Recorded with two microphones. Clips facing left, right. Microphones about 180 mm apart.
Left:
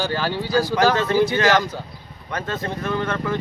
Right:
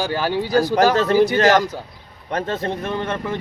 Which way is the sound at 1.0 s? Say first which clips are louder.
Right 3 dB; 40° right (ahead or behind).